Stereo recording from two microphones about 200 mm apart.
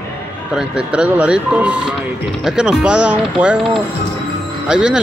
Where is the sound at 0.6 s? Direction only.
5° right (ahead or behind).